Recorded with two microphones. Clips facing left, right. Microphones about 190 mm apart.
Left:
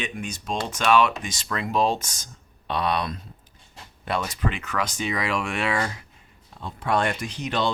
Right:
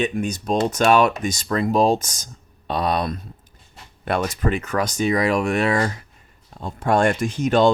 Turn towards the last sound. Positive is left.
turn(degrees=-45)  # may be behind; listen again after turning